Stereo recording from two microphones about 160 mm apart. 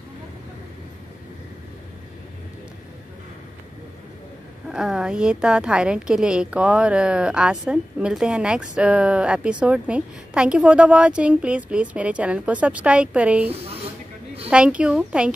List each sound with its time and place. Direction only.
4.6 s a woman's voice: 5° right (ahead or behind)
14.5 s a woman's voice: 5° right (ahead or behind)